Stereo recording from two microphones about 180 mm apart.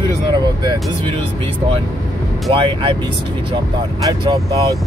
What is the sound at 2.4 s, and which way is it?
Speech, 30° right (ahead or behind).